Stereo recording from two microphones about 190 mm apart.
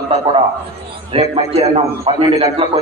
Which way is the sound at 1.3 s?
30° right (ahead or behind).